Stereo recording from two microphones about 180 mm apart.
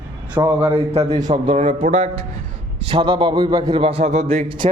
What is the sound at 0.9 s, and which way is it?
A man's voice, 40° right (ahead or behind).